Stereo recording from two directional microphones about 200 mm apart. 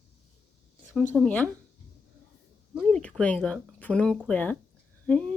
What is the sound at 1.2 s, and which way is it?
Speech, 5° left (ahead or behind).